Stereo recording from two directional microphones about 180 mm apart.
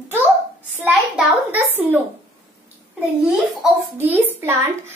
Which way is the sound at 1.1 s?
10° right (ahead or behind).